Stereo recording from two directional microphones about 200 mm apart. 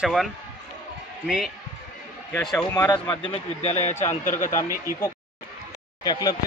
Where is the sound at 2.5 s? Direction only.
20° left (ahead or behind).